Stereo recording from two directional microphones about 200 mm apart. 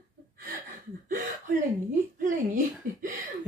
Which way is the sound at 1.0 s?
40° right (ahead or behind).